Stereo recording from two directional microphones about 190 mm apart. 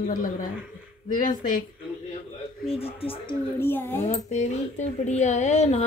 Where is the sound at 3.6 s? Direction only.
10° left (ahead or behind).